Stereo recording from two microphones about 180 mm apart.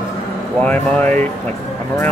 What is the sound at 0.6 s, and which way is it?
Speech, 5° left (ahead or behind).